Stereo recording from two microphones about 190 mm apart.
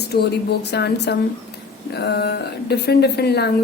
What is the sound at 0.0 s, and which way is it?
A woman's voice, 60° left (ahead or behind).